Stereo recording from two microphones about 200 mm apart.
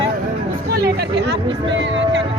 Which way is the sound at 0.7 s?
55° right (ahead or behind).